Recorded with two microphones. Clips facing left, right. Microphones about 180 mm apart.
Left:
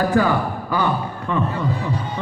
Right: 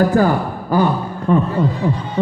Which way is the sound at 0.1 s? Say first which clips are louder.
Right 3 dB; 40° right (ahead or behind).